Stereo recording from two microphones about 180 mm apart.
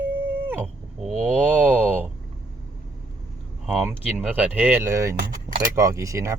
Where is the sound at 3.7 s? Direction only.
5° right (ahead or behind).